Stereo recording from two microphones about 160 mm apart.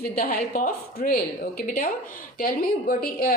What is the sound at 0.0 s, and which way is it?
A woman's voice, 65° left (ahead or behind).